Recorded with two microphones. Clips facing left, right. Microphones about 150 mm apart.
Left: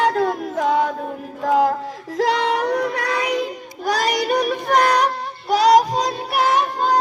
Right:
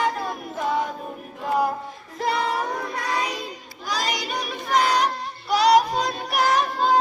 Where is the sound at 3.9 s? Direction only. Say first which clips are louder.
Left 8 dB; 55° left (ahead or behind).